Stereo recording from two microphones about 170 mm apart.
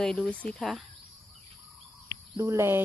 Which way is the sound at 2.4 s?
15° right (ahead or behind).